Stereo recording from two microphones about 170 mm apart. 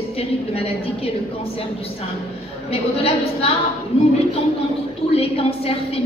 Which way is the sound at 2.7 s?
35° left (ahead or behind).